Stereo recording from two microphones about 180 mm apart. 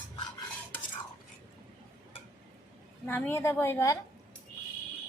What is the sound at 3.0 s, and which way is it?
Speech, 15° left (ahead or behind).